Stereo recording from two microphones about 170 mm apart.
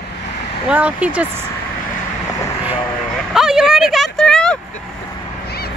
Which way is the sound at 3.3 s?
5° right (ahead or behind).